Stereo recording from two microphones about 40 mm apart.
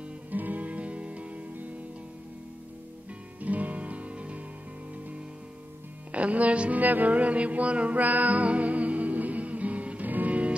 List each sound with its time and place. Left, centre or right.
0.3 s music: right
3.3 s music: right
6.1 s music: right
6.8 s music: right